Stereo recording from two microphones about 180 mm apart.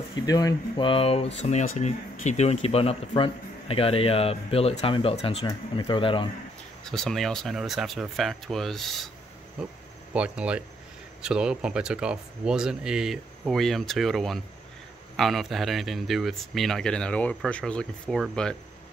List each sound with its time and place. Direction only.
0.1 s speech: 20° left (ahead or behind)
6.8 s speech: 5° left (ahead or behind)